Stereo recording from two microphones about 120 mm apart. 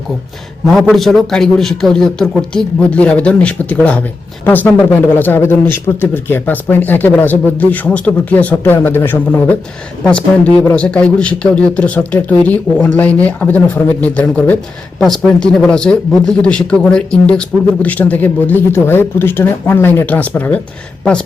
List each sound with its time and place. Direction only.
0.7 s a man's voice: centre (ahead or behind)
14.9 s speech: 5° left (ahead or behind)